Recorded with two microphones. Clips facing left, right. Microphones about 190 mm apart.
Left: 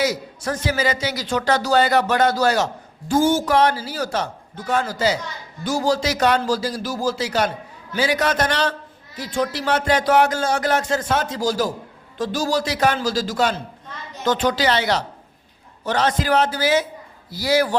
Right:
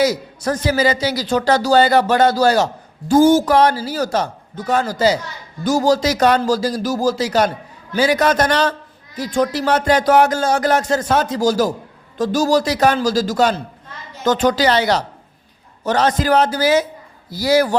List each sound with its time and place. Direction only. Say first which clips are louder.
0.0 s a man's voice: right 5 dB; 40° right (ahead or behind)